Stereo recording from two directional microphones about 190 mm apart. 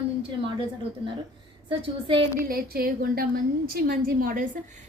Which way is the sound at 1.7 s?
25° right (ahead or behind).